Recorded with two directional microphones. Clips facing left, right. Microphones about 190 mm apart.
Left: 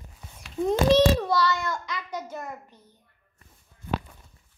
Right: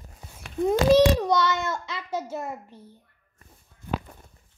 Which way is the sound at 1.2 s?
20° right (ahead or behind).